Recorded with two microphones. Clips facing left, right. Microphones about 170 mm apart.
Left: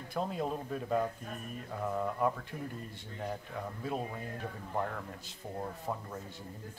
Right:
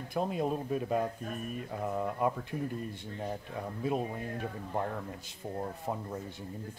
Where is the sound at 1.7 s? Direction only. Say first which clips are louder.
Left 1 dB; 20° right (ahead or behind).